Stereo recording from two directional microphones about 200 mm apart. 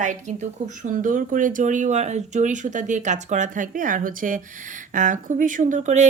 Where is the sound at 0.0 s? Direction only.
35° right (ahead or behind).